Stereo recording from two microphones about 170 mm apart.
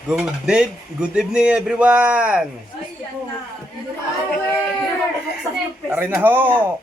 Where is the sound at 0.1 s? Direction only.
5° right (ahead or behind).